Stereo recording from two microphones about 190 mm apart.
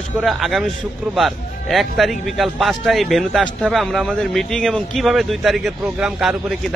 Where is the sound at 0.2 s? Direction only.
Centre (ahead or behind).